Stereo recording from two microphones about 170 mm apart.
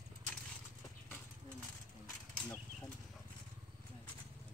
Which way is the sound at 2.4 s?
5° left (ahead or behind).